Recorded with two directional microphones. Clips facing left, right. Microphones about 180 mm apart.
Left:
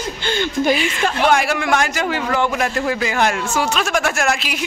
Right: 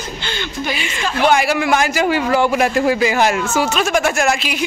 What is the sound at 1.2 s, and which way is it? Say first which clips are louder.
A man's voice: right 3 dB; centre (ahead or behind).